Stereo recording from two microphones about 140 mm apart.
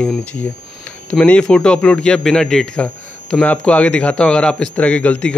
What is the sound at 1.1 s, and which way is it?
Speech, 10° left (ahead or behind).